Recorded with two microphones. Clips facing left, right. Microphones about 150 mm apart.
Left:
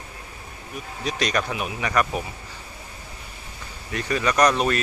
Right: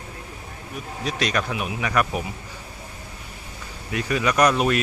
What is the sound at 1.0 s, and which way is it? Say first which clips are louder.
Speech: even; centre (ahead or behind).